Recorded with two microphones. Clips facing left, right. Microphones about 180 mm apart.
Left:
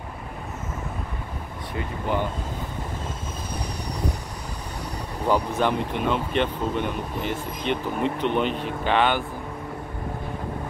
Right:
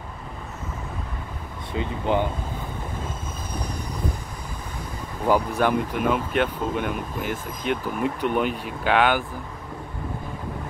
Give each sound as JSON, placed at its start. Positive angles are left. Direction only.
{"t": 1.7, "sound": "speech", "side_deg": -20}
{"t": 5.2, "sound": "speech", "side_deg": -10}